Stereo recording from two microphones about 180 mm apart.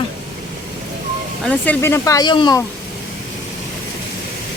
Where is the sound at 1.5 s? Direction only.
10° left (ahead or behind).